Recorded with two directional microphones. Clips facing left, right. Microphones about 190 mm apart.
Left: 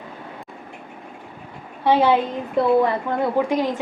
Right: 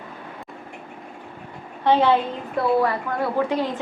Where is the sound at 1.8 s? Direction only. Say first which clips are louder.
Left 1 dB; 10° left (ahead or behind).